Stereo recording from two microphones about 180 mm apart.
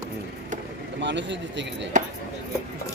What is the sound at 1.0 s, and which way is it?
Speech, 85° right.